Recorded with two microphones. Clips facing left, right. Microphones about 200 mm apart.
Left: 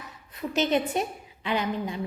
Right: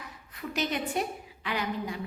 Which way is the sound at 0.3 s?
25° left (ahead or behind).